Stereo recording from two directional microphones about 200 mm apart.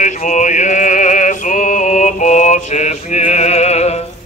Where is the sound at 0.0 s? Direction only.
35° left (ahead or behind).